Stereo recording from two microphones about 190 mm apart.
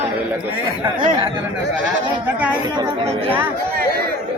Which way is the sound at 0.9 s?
25° right (ahead or behind).